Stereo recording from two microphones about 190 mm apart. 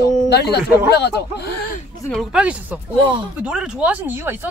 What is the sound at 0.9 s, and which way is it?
Speech, 60° left (ahead or behind).